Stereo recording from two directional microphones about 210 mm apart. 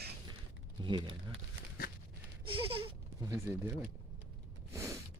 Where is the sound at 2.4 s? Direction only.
25° right (ahead or behind).